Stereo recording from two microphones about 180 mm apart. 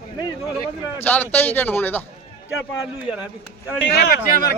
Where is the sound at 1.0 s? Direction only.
10° left (ahead or behind).